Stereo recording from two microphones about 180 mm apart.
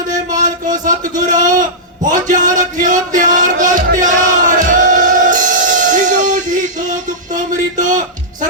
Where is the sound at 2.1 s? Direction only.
45° right (ahead or behind).